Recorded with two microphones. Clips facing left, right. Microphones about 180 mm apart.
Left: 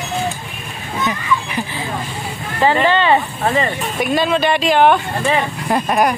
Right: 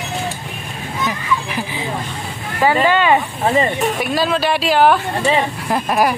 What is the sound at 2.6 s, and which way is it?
Speech, 10° right (ahead or behind).